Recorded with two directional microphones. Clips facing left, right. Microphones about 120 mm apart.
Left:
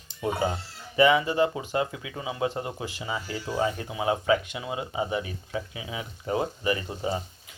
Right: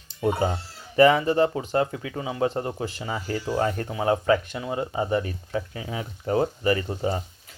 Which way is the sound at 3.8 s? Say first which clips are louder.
Right 3 dB; 10° left (ahead or behind).